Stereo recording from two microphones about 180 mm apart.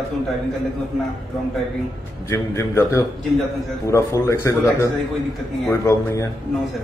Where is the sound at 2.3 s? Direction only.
15° left (ahead or behind).